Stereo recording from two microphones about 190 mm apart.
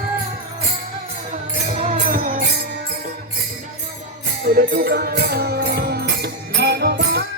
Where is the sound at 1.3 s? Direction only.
35° right (ahead or behind).